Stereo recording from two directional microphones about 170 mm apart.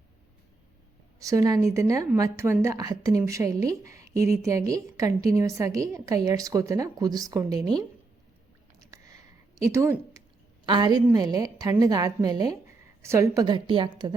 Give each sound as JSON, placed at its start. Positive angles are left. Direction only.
{"t": 1.2, "sound": "a woman's voice", "side_deg": -20}
{"t": 8.8, "sound": "a sound", "side_deg": -20}
{"t": 10.7, "sound": "a woman's voice", "side_deg": -25}